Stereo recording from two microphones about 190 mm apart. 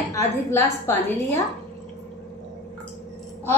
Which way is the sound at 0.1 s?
15° left (ahead or behind).